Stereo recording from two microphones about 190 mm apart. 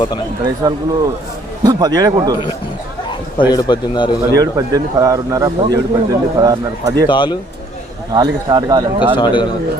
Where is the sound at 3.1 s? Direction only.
25° left (ahead or behind).